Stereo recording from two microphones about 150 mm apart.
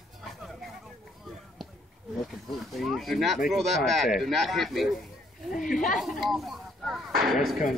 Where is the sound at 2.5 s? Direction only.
Centre (ahead or behind).